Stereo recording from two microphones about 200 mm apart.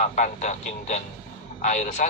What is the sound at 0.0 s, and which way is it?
Speech, 35° left (ahead or behind).